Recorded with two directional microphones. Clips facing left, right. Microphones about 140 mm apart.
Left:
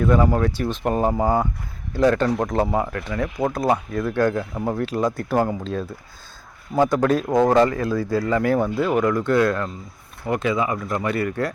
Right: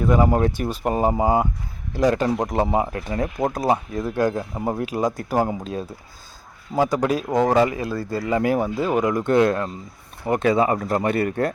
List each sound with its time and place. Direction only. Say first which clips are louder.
0.0 s speech: even; 15° right (ahead or behind)
0.6 s speech: even; 10° right (ahead or behind); by 3.2 s 25° right (ahead or behind)
3.7 s speech: even; 15° right (ahead or behind)
7.0 s speech: left 2 dB; 10° right (ahead or behind)
8.3 s speech: right 2 dB; 15° right (ahead or behind)
10.3 s speech: right 4 dB; 35° right (ahead or behind)